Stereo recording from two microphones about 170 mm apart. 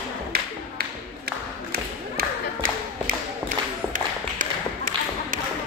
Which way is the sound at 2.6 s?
55° right (ahead or behind).